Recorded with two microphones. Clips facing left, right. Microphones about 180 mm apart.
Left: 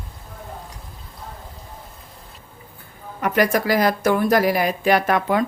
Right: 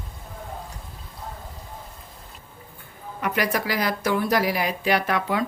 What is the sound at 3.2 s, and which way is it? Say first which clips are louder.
Speech: left 6 dB; 45° left (ahead or behind).